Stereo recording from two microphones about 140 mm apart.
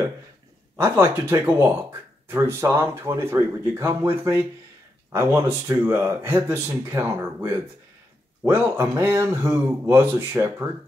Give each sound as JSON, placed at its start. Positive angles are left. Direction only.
{"t": 0.7, "sound": "speech", "side_deg": -20}